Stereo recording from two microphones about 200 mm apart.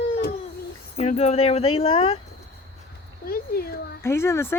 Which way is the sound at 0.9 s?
30° left (ahead or behind).